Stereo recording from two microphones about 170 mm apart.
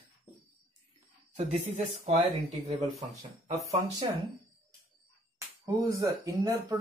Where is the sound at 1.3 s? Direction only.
40° right (ahead or behind).